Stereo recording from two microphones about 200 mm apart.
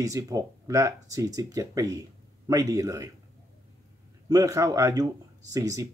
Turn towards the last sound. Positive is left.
turn(degrees=-15)  # may be behind; listen again after turning